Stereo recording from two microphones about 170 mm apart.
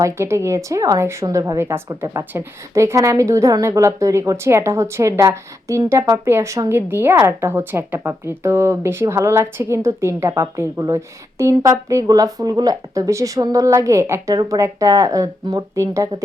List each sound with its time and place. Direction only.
0.0 s a woman's voice: 15° right (ahead or behind)